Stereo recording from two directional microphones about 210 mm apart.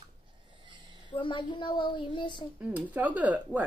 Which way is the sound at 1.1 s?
25° left (ahead or behind).